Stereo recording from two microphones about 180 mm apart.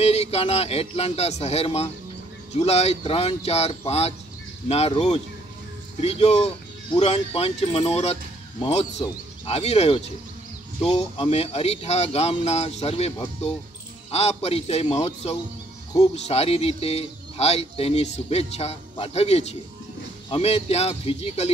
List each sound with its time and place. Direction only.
0.0 s speech: 35° left (ahead or behind)
9.5 s speech: 35° left (ahead or behind)
14.1 s speech: 35° left (ahead or behind)